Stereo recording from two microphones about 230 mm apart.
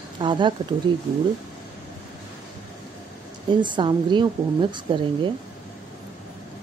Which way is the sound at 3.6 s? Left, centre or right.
Centre.